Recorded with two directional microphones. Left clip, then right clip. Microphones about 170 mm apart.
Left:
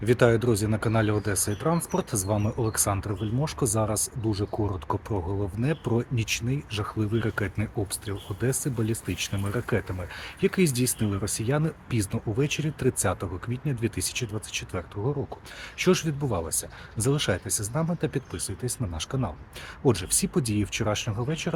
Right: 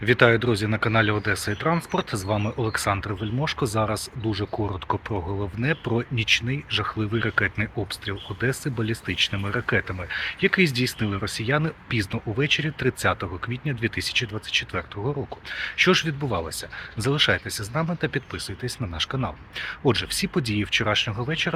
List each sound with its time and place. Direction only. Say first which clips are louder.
0.0 s speech: right 3 dB; 10° left (ahead or behind)
5.1 s speech: right 1 dB; 20° right (ahead or behind)
5.6 s speech: right 4 dB; 5° left (ahead or behind)
17.2 s speech: right 6 dB; 10° left (ahead or behind)